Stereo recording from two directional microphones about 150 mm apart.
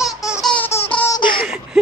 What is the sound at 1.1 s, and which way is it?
Baby laughter, 30° left (ahead or behind).